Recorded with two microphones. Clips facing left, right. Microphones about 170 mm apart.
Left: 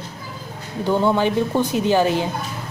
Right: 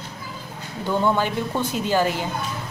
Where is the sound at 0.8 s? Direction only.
20° left (ahead or behind).